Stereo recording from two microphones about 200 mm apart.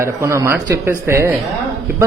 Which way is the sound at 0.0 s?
15° right (ahead or behind).